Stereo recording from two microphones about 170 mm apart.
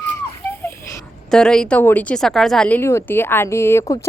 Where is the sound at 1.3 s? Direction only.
5° left (ahead or behind).